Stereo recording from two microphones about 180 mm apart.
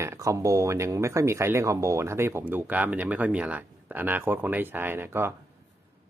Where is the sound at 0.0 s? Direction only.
15° right (ahead or behind).